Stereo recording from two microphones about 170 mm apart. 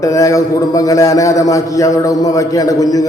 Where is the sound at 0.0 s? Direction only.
20° left (ahead or behind).